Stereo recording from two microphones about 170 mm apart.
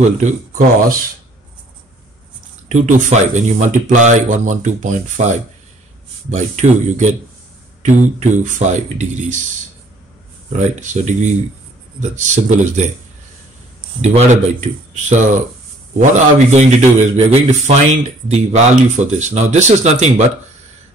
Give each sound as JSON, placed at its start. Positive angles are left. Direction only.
{"t": 0.0, "sound": "a man's voice", "side_deg": -45}
{"t": 2.7, "sound": "a man's voice", "side_deg": -45}
{"t": 10.6, "sound": "a man's voice", "side_deg": -45}
{"t": 15.0, "sound": "a man's voice", "side_deg": -45}